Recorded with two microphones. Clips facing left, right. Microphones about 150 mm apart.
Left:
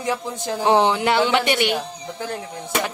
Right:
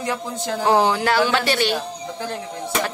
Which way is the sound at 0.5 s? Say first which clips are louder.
Even; 20° left (ahead or behind).